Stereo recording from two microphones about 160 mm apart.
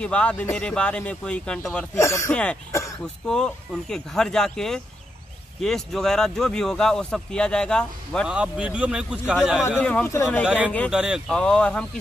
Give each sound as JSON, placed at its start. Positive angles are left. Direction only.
{"t": 0.0, "sound": "speech", "side_deg": 5}
{"t": 2.0, "sound": "speech", "side_deg": 20}
{"t": 3.3, "sound": "speech", "side_deg": 5}
{"t": 8.4, "sound": "speech", "side_deg": -5}
{"t": 9.7, "sound": "speech", "side_deg": 10}
{"t": 10.4, "sound": "speech", "side_deg": -10}